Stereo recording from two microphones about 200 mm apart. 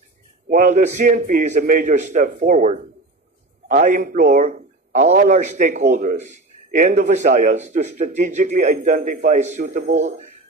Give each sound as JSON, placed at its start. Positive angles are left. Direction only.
{"t": 0.5, "sound": "a man's voice", "side_deg": -40}